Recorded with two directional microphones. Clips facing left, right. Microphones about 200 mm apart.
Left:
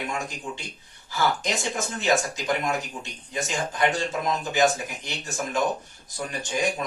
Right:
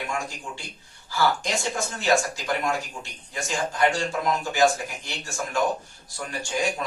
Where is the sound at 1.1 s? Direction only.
20° left (ahead or behind).